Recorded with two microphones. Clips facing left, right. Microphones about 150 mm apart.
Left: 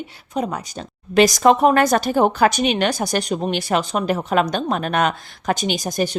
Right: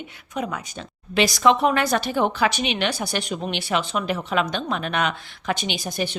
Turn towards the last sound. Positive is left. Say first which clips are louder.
# left 5 dB
turn(degrees=40)  # may be behind; listen again after turning